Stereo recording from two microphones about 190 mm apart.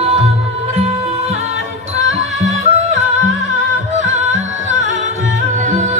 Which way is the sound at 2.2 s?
35° right (ahead or behind).